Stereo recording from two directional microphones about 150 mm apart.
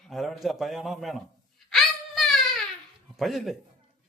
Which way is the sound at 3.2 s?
Centre (ahead or behind).